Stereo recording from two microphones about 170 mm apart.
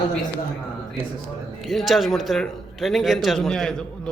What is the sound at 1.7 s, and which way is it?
Speech, centre (ahead or behind).